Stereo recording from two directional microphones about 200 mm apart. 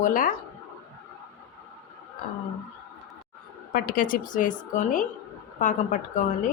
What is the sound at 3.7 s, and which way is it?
A woman's voice, 45° left (ahead or behind).